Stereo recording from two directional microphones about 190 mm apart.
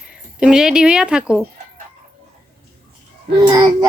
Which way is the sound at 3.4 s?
20° right (ahead or behind).